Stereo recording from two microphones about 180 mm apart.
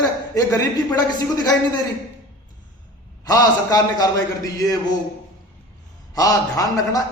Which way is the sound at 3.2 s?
20° left (ahead or behind).